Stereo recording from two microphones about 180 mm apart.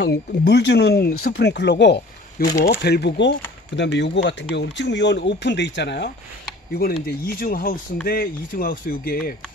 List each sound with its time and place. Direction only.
0.0 s speech: 65° left (ahead or behind)
6.7 s speech: 60° left (ahead or behind)